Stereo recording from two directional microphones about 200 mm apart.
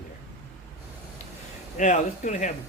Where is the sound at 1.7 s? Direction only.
35° left (ahead or behind).